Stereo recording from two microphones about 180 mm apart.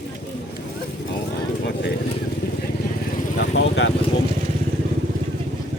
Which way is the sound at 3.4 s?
85° left.